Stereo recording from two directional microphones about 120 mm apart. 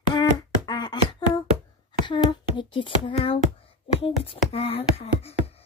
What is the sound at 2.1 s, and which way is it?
Child singing, 40° left (ahead or behind).